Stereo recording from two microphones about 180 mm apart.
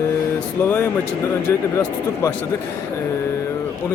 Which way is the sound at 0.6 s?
10° left (ahead or behind).